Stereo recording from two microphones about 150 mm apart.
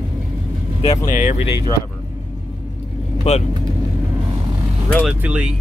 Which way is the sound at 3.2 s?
45° left (ahead or behind).